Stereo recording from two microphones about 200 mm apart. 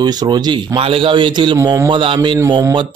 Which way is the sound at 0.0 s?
20° right (ahead or behind).